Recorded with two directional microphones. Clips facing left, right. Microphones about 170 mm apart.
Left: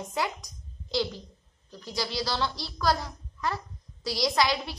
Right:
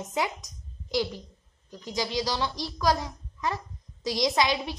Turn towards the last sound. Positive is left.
turn(degrees=-20)  # may be behind; listen again after turning